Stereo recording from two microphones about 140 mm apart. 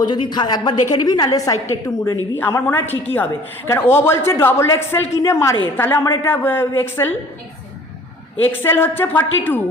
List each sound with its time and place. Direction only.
0.0 s a woman's voice: 30° left (ahead or behind); by 7.2 s 15° left (ahead or behind)
8.5 s a man's voice: 15° left (ahead or behind)